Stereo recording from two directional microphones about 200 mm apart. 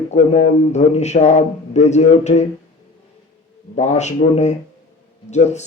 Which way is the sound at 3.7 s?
35° left (ahead or behind).